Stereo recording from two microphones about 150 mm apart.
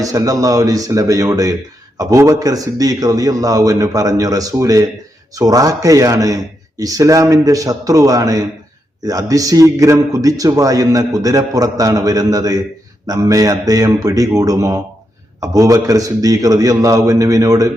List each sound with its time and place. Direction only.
0.0 s speech: 25° right (ahead or behind)